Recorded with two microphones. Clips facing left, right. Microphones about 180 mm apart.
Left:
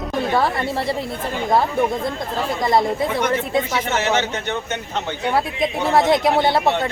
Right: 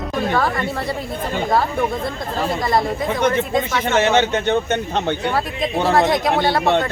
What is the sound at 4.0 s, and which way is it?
A man's voice, 55° right (ahead or behind).